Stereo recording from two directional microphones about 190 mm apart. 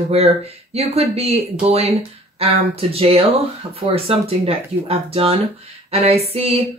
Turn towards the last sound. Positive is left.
turn(degrees=-30)  # may be behind; listen again after turning